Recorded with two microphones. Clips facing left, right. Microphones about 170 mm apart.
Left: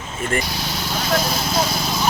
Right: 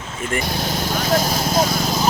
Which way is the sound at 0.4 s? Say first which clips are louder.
Right 4 dB; 50° right (ahead or behind).